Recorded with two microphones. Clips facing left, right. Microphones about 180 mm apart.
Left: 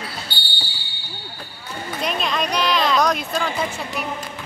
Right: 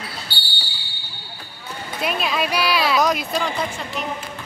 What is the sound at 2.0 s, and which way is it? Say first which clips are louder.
Speech: right 1 dB; 5° right (ahead or behind).